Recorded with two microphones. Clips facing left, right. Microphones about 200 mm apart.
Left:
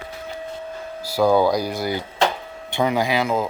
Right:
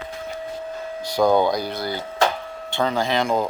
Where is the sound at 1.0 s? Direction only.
5° left (ahead or behind).